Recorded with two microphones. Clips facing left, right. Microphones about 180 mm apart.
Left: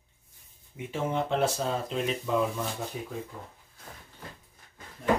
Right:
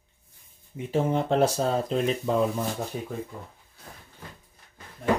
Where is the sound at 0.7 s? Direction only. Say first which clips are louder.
Right 5 dB; 35° right (ahead or behind).